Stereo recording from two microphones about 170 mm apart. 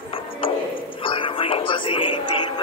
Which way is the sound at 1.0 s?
30° left (ahead or behind).